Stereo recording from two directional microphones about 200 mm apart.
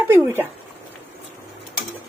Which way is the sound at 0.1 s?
10° right (ahead or behind).